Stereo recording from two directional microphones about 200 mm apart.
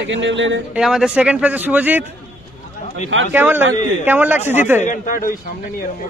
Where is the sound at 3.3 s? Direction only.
10° right (ahead or behind).